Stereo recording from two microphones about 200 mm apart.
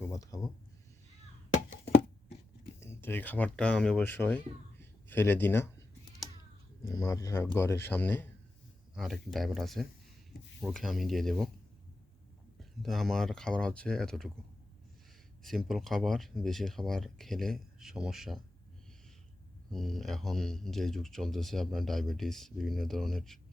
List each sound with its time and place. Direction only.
0.1 s bleat: 15° left (ahead or behind)
2.8 s speech: 10° left (ahead or behind)
6.8 s speech: 15° left (ahead or behind)
12.8 s speech: centre (ahead or behind)
15.4 s speech: centre (ahead or behind)
19.7 s speech: centre (ahead or behind)